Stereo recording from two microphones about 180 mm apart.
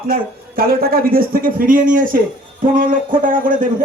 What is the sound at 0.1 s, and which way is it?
Speech, 55° right (ahead or behind).